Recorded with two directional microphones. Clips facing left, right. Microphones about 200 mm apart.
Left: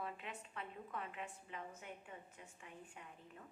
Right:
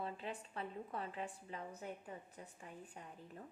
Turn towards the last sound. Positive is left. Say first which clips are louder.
# right 4 dB
turn(degrees=-35)  # may be behind; listen again after turning